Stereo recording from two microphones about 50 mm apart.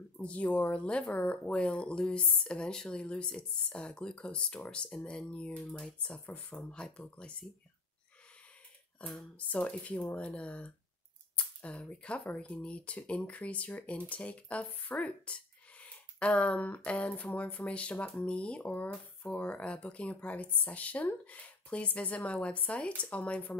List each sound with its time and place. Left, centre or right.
0.2 s speech: left
9.5 s speech: left